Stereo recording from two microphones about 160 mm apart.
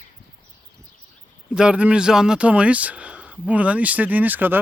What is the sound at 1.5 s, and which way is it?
Speech, 5° right (ahead or behind).